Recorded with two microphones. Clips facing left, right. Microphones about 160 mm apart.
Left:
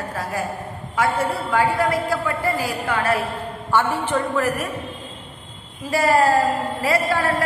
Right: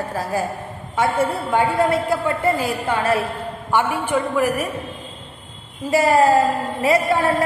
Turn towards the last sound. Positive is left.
turn(degrees=-20)  # may be behind; listen again after turning